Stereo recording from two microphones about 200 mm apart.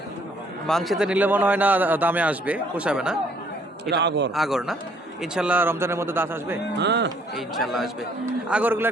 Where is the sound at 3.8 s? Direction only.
55° right (ahead or behind).